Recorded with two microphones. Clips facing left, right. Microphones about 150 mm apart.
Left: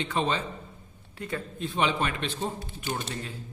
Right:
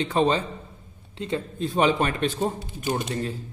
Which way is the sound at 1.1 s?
25° right (ahead or behind).